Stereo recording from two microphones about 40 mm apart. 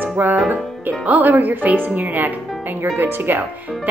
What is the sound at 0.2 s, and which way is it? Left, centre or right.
Speech, right.